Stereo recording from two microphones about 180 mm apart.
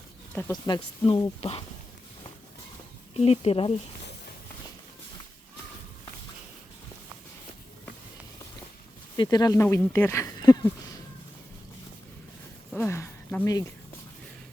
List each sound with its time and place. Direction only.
0.3 s speech: 20° left (ahead or behind)
3.2 s speech: 35° left (ahead or behind)
9.1 s speech: 25° left (ahead or behind)
12.7 s speech: 10° left (ahead or behind)